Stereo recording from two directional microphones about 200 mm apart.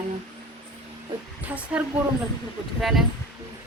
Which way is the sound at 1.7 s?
5° right (ahead or behind).